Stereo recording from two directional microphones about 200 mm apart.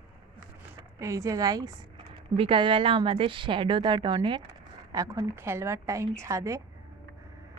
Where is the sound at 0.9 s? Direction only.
15° right (ahead or behind).